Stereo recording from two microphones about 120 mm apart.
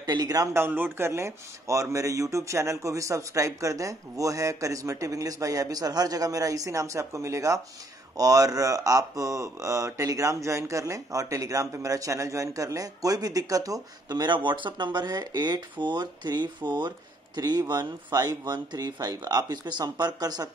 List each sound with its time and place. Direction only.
0.0 s speech: 35° right (ahead or behind)